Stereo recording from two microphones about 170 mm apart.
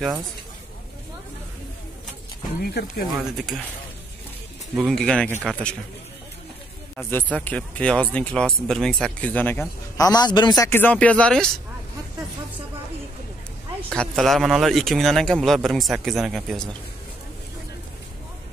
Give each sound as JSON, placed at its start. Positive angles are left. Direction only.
{"t": 2.6, "sound": "speech", "side_deg": 60}
{"t": 3.3, "sound": "a man's voice", "side_deg": 0}
{"t": 4.7, "sound": "a man's voice", "side_deg": 0}
{"t": 7.0, "sound": "a man's voice", "side_deg": 10}
{"t": 13.9, "sound": "a man's voice", "side_deg": 0}